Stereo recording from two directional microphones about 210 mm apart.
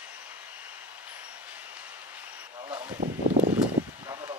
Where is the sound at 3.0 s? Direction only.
40° right (ahead or behind).